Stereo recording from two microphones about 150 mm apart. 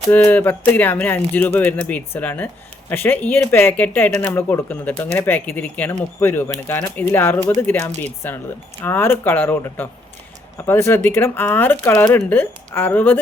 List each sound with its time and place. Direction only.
0.1 s speech: 10° left (ahead or behind)